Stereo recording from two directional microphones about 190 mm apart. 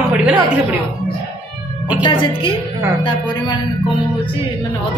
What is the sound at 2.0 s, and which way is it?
Speech, 25° left (ahead or behind).